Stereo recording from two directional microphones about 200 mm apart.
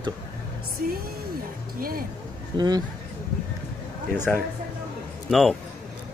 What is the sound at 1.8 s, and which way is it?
Speech, 45° right (ahead or behind).